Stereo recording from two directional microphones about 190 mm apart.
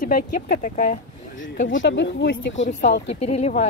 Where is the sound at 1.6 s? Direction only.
70° left (ahead or behind).